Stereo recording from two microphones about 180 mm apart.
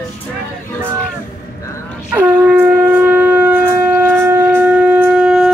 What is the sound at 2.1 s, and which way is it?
Shofar, 5° right (ahead or behind).